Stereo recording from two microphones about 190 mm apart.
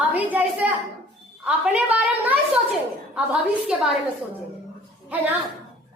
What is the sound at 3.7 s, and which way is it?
Speech, 5° right (ahead or behind).